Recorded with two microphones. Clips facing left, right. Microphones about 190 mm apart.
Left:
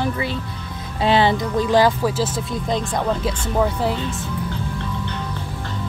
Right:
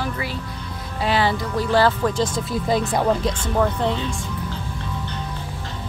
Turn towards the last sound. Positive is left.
turn(degrees=5)  # may be behind; listen again after turning